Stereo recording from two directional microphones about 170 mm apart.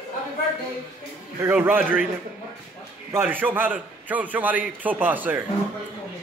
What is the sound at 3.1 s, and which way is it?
A man's voice, 10° right (ahead or behind).